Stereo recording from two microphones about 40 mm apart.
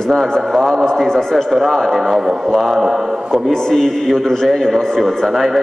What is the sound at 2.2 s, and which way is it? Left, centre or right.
Speech, centre.